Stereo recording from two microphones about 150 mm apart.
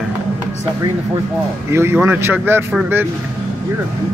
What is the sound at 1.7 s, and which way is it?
Speech, 15° right (ahead or behind).